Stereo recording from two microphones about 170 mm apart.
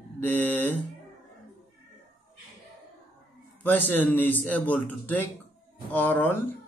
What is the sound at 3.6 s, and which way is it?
Speech, 10° left (ahead or behind).